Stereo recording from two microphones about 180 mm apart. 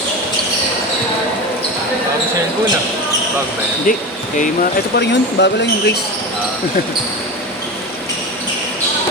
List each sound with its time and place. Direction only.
3.9 s speech: 50° left (ahead or behind)
4.9 s speech: 70° left (ahead or behind)